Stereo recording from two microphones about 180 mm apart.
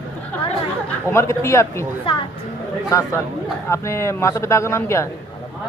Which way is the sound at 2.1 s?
30° left (ahead or behind).